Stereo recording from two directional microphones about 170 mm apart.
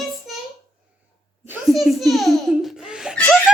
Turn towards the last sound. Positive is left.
turn(degrees=5)  # may be behind; listen again after turning